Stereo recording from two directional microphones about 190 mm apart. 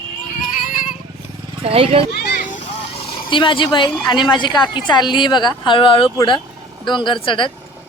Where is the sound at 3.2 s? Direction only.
25° left (ahead or behind).